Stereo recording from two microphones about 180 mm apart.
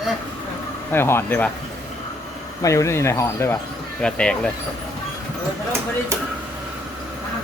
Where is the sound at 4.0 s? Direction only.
5° left (ahead or behind).